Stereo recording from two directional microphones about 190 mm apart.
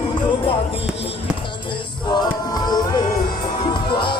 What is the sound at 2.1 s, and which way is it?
Music, 20° left (ahead or behind).